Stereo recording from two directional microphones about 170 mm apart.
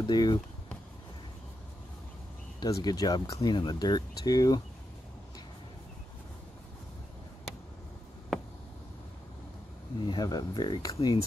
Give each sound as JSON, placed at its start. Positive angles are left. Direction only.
{"t": 0.0, "sound": "speech", "side_deg": 25}
{"t": 2.6, "sound": "speech", "side_deg": 25}
{"t": 10.0, "sound": "speech", "side_deg": 25}